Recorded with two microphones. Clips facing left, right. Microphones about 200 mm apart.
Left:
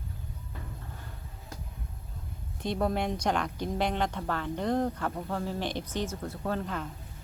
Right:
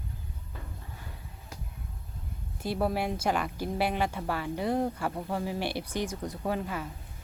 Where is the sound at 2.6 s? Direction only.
5° right (ahead or behind).